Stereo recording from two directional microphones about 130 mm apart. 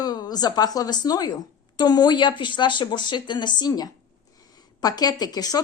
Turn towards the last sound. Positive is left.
turn(degrees=30)  # may be behind; listen again after turning